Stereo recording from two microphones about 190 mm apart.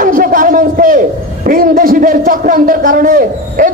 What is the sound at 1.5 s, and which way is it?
A man's voice, 45° right (ahead or behind).